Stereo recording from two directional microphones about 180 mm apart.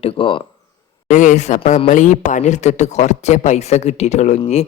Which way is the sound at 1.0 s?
40° left (ahead or behind).